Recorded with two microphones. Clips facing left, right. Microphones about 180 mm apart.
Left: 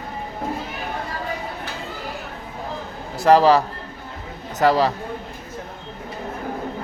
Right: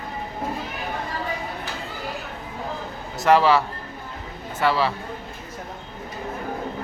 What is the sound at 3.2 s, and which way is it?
Speech, 35° left (ahead or behind).